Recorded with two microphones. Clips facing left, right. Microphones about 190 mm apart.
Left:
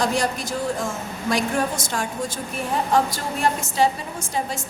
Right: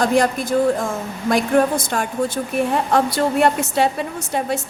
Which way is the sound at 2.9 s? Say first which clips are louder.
Right 7 dB; 65° right (ahead or behind).